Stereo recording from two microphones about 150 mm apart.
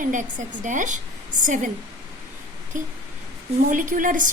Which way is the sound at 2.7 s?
55° right (ahead or behind).